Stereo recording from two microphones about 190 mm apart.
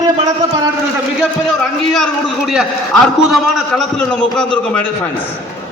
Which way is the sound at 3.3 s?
5° left (ahead or behind).